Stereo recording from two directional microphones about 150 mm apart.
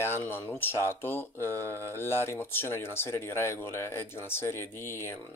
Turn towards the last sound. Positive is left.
turn(degrees=15)  # may be behind; listen again after turning